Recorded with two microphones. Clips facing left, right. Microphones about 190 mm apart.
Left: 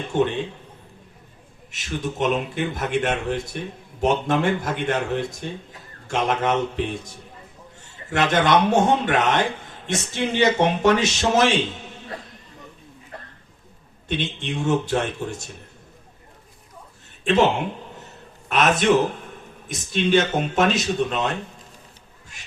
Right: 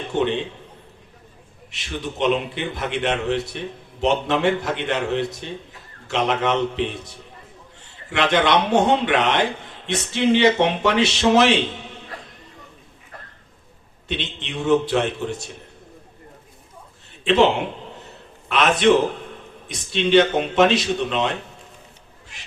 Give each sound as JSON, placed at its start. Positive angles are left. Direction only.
{"t": 0.1, "sound": "a man's voice", "side_deg": 10}
{"t": 1.7, "sound": "speech", "side_deg": 45}
{"t": 14.1, "sound": "speech", "side_deg": 45}
{"t": 17.2, "sound": "a man's voice", "side_deg": 45}